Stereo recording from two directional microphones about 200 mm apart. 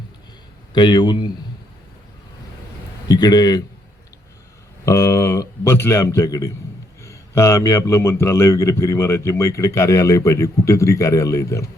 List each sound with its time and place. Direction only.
0.7 s speech: 20° left (ahead or behind)
3.1 s speech: 20° left (ahead or behind)
4.9 s a man's voice: 15° left (ahead or behind)